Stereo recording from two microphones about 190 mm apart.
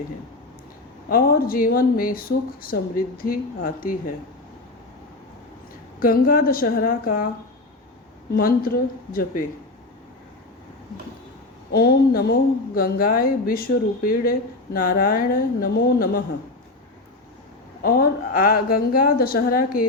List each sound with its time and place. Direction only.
1.1 s speech: 50° left (ahead or behind)
6.0 s speech: 50° left (ahead or behind)
8.4 s speech: 50° left (ahead or behind)
11.7 s speech: 55° left (ahead or behind)
17.8 s speech: 50° left (ahead or behind)